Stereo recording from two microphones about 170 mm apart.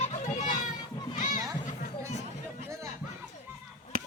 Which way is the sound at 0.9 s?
30° left (ahead or behind).